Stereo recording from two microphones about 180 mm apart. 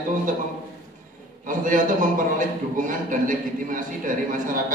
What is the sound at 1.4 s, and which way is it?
A man's voice, 45° right (ahead or behind).